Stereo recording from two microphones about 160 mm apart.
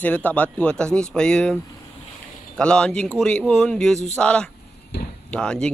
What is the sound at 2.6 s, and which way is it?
Speech, 5° left (ahead or behind).